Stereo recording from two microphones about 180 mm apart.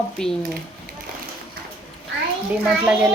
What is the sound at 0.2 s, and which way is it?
Speech, 5° left (ahead or behind).